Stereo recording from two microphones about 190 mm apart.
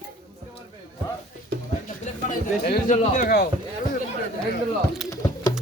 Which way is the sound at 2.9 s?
40° left (ahead or behind).